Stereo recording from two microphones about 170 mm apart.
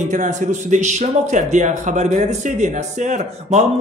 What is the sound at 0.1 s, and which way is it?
Speech, 45° right (ahead or behind).